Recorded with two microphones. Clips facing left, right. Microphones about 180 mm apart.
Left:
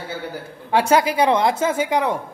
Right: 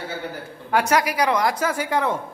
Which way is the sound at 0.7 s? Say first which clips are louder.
Left 3 dB; 25° left (ahead or behind).